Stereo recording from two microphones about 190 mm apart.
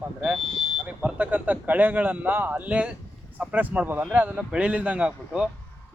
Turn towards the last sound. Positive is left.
turn(degrees=-5)  # may be behind; listen again after turning